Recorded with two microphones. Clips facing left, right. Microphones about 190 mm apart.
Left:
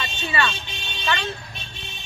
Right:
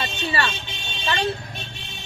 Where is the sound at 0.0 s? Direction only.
35° right (ahead or behind).